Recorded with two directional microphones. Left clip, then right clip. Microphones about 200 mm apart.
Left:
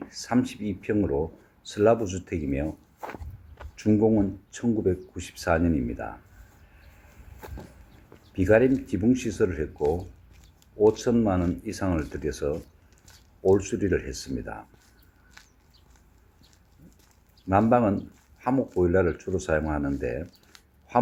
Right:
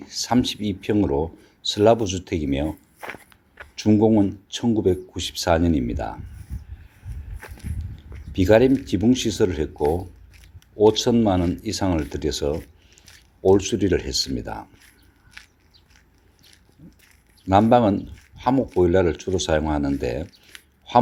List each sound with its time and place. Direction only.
0.1 s speech: 30° right (ahead or behind)
3.8 s speech: 25° right (ahead or behind)
8.3 s speech: 30° right (ahead or behind)
11.0 s speech: 25° right (ahead or behind)
13.5 s speech: 30° right (ahead or behind)
17.5 s speech: 25° right (ahead or behind)
20.5 s a sound: centre (ahead or behind)